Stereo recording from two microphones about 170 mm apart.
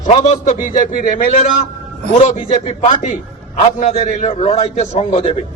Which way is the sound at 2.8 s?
45° left (ahead or behind).